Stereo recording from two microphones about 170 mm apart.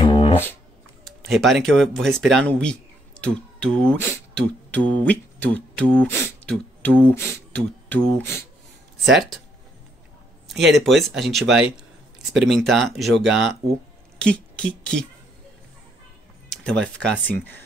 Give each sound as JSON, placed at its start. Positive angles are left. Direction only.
{"t": 0.0, "sound": "a sound", "side_deg": 35}
{"t": 1.0, "sound": "speech", "side_deg": 0}
{"t": 10.5, "sound": "speech", "side_deg": 0}
{"t": 16.8, "sound": "speech", "side_deg": 5}